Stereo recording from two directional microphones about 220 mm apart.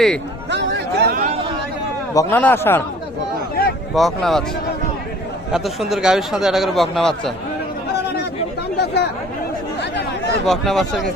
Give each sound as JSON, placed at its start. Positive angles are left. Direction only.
{"t": 0.5, "sound": "a sound", "side_deg": -50}
{"t": 2.1, "sound": "speech", "side_deg": 10}
{"t": 3.9, "sound": "speech", "side_deg": 0}
{"t": 5.5, "sound": "speech", "side_deg": 0}
{"t": 8.7, "sound": "chatter", "side_deg": 50}
{"t": 10.4, "sound": "speech", "side_deg": 0}